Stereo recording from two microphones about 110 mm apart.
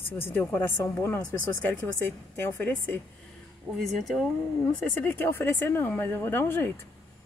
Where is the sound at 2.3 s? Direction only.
20° left (ahead or behind).